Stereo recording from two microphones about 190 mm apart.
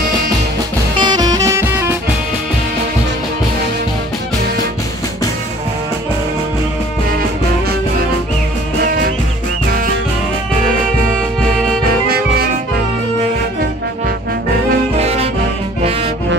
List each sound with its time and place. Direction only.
0.9 s music: 20° right (ahead or behind)
15.8 s music: 30° right (ahead or behind)